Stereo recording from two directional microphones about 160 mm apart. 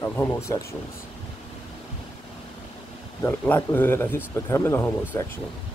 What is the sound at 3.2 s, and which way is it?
Speech, 15° left (ahead or behind).